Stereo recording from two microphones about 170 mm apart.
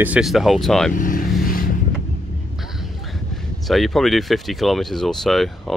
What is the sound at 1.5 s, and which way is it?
Vehicle, 55° left (ahead or behind).